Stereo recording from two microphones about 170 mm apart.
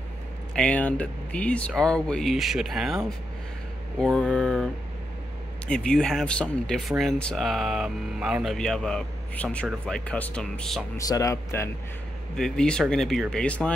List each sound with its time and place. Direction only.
0.6 s speech: 5° left (ahead or behind)
5.7 s speech: 5° left (ahead or behind)
11.0 s speech: 20° left (ahead or behind)
12.4 s speech: 5° left (ahead or behind)